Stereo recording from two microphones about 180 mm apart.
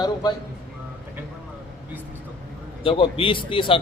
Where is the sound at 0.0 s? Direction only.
25° left (ahead or behind).